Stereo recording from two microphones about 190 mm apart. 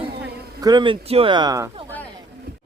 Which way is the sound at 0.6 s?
25° right (ahead or behind).